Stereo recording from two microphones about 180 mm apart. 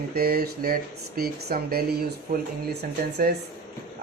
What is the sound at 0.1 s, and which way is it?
Speech, 60° right (ahead or behind).